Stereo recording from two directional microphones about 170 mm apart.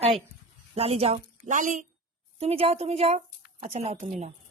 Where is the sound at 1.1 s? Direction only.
50° right (ahead or behind).